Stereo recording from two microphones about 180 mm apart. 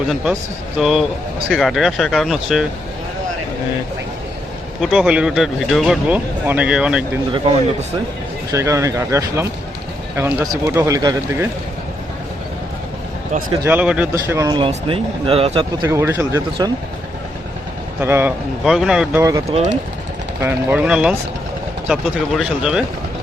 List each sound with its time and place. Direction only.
0.8 s speech: centre (ahead or behind)
4.8 s speech: 5° right (ahead or behind)
7.3 s speech: 30° right (ahead or behind)
8.5 s speech: 15° right (ahead or behind)
13.7 s speech: 5° right (ahead or behind); by 15.9 s 30° right (ahead or behind)
15.9 s speech: 15° right (ahead or behind)
18.0 s speech: 10° right (ahead or behind)
19.5 s speech: 35° right (ahead or behind)
20.4 s speech: 10° right (ahead or behind)
22.4 s speech: 5° right (ahead or behind)